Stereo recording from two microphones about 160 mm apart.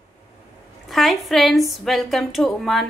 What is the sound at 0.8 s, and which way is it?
A woman's voice, centre (ahead or behind).